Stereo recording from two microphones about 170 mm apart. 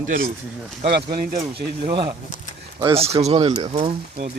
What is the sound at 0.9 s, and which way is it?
Speech, 60° right (ahead or behind).